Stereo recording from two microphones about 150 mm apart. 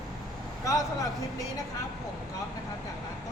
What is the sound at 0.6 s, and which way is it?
Speech, 25° left (ahead or behind).